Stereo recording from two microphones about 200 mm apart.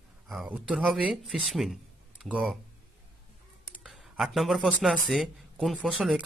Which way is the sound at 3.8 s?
Centre (ahead or behind).